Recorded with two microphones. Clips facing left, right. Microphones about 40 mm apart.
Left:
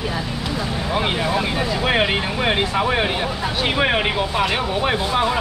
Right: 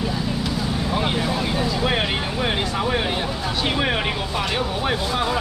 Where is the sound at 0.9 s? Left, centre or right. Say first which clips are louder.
Left 4 dB; left.